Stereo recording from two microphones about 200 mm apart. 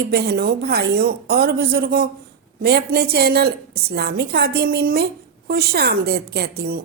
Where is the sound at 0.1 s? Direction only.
55° right (ahead or behind).